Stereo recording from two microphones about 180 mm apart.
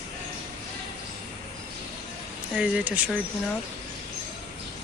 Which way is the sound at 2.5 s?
5° right (ahead or behind).